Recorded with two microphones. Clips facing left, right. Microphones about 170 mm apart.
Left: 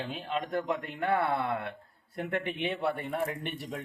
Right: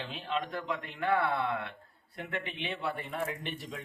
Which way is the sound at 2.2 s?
50° left (ahead or behind).